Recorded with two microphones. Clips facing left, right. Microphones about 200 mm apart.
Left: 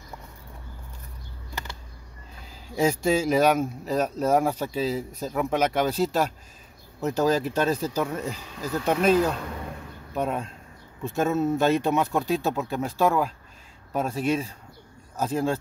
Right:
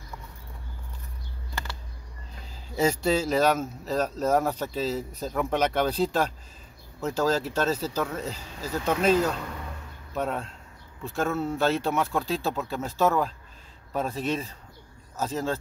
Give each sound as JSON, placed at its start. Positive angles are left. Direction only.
{"t": 2.7, "sound": "speech", "side_deg": 10}